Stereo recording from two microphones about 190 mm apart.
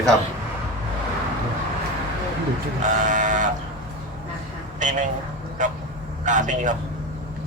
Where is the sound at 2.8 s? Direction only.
40° right (ahead or behind).